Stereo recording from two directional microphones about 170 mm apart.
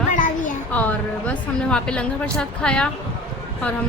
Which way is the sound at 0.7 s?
10° left (ahead or behind).